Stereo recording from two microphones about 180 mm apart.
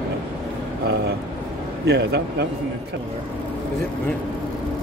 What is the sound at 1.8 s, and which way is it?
Speech, 70° right (ahead or behind).